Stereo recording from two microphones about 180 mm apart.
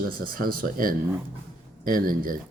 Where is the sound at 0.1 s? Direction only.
55° right (ahead or behind).